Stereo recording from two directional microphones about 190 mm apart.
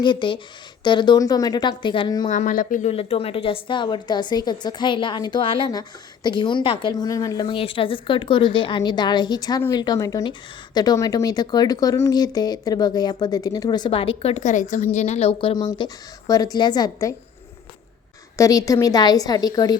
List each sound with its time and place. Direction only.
0.0 s speech: 25° left (ahead or behind)
2.3 s speech: 40° left (ahead or behind)
2.9 s speech: 30° left (ahead or behind)
18.3 s speech: 15° left (ahead or behind)